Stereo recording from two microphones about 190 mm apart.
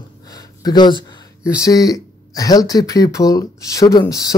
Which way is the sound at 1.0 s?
20° left (ahead or behind).